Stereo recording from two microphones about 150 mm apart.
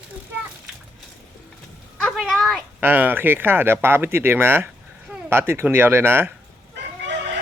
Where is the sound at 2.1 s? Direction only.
Centre (ahead or behind).